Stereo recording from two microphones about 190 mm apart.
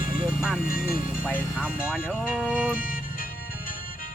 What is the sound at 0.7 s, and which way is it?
Speech, 50° left (ahead or behind).